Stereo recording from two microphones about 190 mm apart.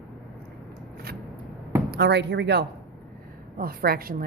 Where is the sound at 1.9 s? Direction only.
60° right (ahead or behind).